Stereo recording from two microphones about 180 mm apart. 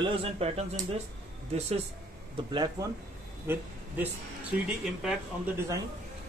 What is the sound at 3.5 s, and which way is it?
A man's voice, 10° right (ahead or behind).